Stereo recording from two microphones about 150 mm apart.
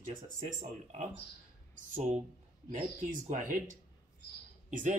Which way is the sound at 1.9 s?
60° right (ahead or behind).